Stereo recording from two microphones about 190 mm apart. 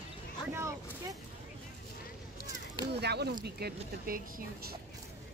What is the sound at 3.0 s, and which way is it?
Speech, 60° right (ahead or behind).